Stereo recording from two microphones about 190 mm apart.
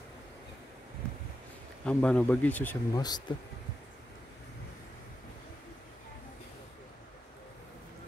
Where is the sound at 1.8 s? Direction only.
5° left (ahead or behind).